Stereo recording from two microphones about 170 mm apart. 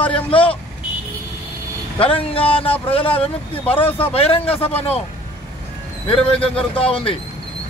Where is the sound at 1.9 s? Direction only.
30° left (ahead or behind).